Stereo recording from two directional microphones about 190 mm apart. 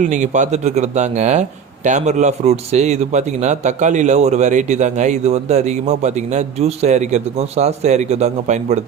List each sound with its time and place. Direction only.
0.0 s a man's voice: 40° right (ahead or behind)